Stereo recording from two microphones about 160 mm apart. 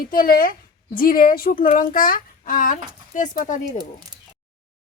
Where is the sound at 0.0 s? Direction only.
60° left (ahead or behind).